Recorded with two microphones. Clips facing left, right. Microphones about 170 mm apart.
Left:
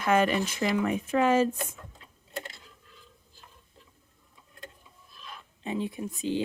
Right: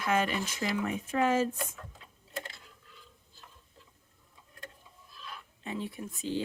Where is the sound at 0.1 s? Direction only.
60° left (ahead or behind); by 1.5 s 85° left.